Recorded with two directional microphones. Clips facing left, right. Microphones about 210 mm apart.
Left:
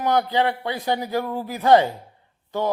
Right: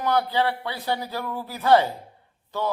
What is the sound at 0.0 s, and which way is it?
A man's voice, 20° left (ahead or behind).